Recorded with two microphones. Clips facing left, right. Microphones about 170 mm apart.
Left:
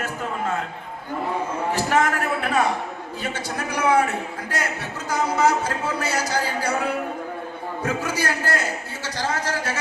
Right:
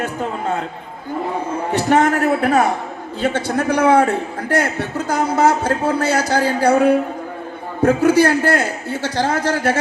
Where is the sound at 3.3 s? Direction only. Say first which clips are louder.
Right 11 dB; 60° right (ahead or behind).